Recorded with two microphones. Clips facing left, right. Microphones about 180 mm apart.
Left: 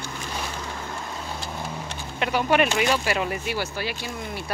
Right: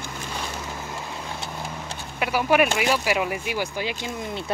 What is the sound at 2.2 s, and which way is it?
Speech, 10° right (ahead or behind).